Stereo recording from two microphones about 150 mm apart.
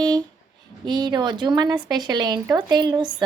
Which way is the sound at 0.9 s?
30° right (ahead or behind).